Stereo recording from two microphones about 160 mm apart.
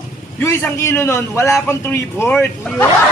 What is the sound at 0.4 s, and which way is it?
Speech, 15° left (ahead or behind).